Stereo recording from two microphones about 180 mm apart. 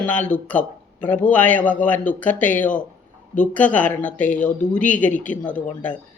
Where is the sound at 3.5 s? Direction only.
10° left (ahead or behind).